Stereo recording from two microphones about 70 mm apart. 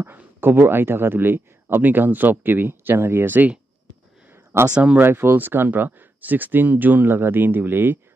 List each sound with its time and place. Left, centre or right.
0.0 s speech: right
4.3 s a sound: right
4.7 s speech: centre
5.0 s speech: right